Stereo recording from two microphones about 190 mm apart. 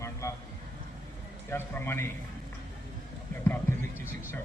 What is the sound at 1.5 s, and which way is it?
Speech, 15° left (ahead or behind).